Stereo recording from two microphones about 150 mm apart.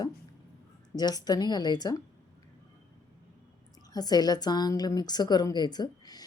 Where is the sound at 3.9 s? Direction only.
25° left (ahead or behind).